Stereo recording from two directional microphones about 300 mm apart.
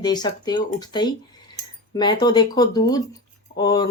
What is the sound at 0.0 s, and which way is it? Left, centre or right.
Speech, centre.